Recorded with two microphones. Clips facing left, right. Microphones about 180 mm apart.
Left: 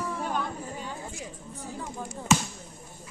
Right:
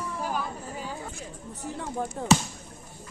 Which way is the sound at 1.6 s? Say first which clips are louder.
Right 5 dB; 75° right (ahead or behind).